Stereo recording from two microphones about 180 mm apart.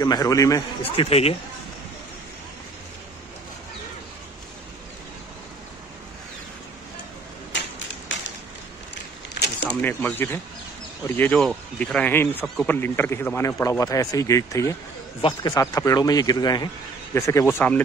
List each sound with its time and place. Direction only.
0.0 s a man's voice: 20° left (ahead or behind)
0.8 s speech: 35° left (ahead or behind)
7.5 s typewriter: 85° left
8.1 s a sound: 90° left
9.4 s a sound: 70° left (ahead or behind)
9.7 s a man's voice: 10° left (ahead or behind)